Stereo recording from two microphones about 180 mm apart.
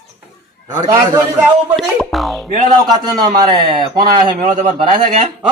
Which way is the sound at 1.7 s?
5° left (ahead or behind).